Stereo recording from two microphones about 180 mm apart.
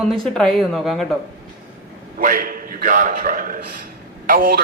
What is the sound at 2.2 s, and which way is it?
A man's voice, 50° right (ahead or behind).